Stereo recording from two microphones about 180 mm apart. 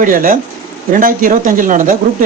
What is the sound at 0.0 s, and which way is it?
Speech, 50° right (ahead or behind).